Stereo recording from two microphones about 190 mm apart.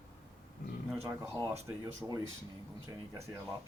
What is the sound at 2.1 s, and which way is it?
Speech, 15° right (ahead or behind).